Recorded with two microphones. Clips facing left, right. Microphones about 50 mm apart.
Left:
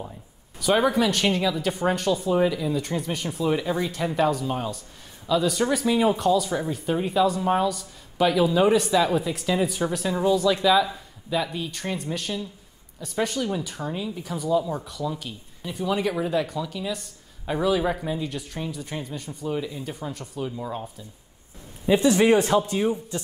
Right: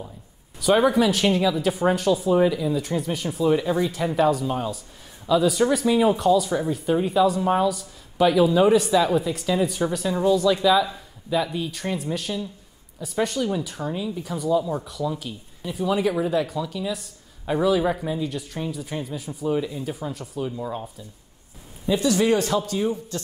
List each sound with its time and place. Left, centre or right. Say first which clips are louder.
0.6 s speech: right 3 dB; centre
21.8 s speech: left 2 dB; left